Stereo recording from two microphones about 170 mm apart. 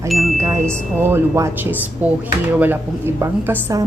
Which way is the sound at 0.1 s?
Centre (ahead or behind).